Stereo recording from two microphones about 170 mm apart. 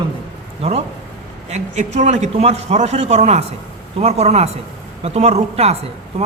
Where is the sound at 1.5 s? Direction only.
40° right (ahead or behind).